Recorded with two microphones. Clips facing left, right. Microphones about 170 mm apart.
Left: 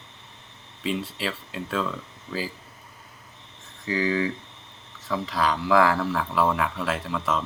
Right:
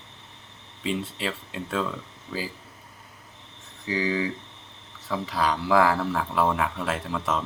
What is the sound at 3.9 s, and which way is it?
Speech, 30° right (ahead or behind).